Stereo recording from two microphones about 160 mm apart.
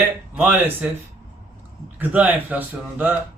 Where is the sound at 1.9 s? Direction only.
10° right (ahead or behind).